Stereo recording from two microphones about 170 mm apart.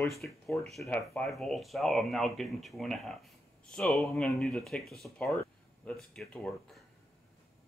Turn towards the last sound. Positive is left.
turn(degrees=5)  # may be behind; listen again after turning